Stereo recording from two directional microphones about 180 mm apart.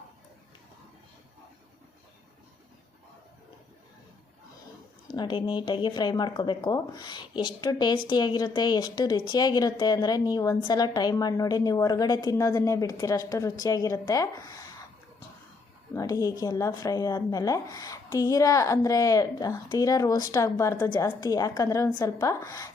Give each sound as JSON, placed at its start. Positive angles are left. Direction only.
{"t": 5.1, "sound": "a woman's voice", "side_deg": 25}
{"t": 15.9, "sound": "a woman's voice", "side_deg": 20}